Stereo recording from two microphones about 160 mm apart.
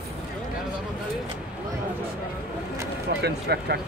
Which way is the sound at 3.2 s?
90° right.